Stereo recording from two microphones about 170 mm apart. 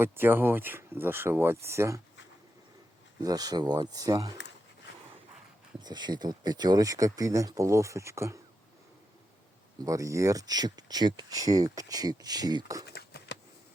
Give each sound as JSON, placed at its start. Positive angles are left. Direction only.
{"t": 0.0, "sound": "speech", "side_deg": -10}
{"t": 3.2, "sound": "speech", "side_deg": -20}
{"t": 5.8, "sound": "speech", "side_deg": -25}
{"t": 9.8, "sound": "speech", "side_deg": -20}
{"t": 12.9, "sound": "a sound", "side_deg": 75}